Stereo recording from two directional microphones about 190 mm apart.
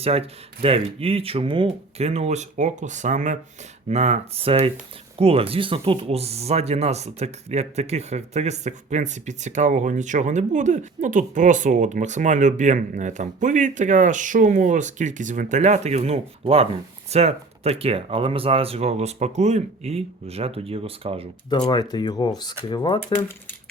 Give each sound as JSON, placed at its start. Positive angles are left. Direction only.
{"t": 0.0, "sound": "speech", "side_deg": -30}
{"t": 21.7, "sound": "speech", "side_deg": 20}